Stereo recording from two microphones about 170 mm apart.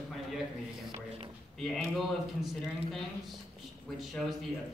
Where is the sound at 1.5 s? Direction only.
5° left (ahead or behind).